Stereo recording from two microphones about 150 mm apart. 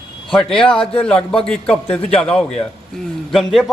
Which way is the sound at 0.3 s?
5° left (ahead or behind).